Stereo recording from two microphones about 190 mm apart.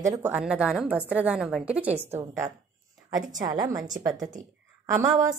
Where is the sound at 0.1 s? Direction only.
10° right (ahead or behind).